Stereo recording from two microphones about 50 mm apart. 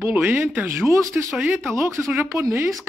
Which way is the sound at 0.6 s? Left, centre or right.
Right.